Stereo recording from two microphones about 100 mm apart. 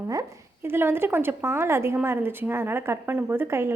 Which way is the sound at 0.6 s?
25° right (ahead or behind).